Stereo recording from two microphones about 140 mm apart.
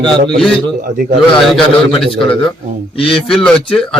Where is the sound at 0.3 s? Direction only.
Centre (ahead or behind).